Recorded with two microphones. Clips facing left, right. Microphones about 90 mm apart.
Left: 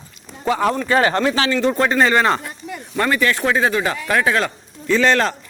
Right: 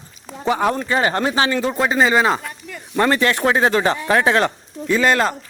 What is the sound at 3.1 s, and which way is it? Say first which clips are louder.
Speech: even; 30° right (ahead or behind).